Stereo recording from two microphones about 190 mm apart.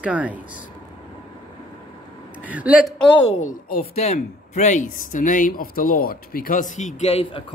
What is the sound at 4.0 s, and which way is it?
A man's voice, 35° left (ahead or behind).